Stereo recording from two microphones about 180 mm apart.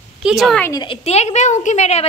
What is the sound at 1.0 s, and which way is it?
Speech, 35° left (ahead or behind).